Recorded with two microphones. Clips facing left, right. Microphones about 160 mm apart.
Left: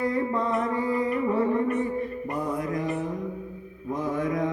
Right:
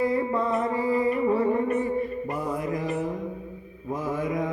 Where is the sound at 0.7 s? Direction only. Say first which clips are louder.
Right 2 dB; 5° right (ahead or behind).